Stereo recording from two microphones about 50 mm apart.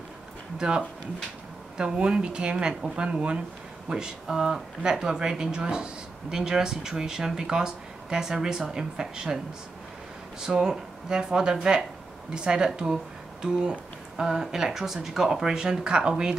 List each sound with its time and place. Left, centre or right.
0.6 s speech: centre
10.4 s speech: centre